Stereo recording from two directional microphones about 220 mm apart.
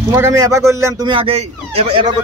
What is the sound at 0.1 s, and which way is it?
Speech, 15° right (ahead or behind).